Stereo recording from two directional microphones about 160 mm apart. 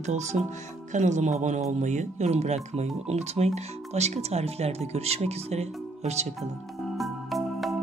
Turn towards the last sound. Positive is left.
turn(degrees=0)  # may be behind; listen again after turning